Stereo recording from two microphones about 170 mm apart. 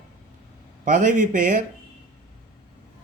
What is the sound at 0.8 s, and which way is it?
Speech, 50° right (ahead or behind).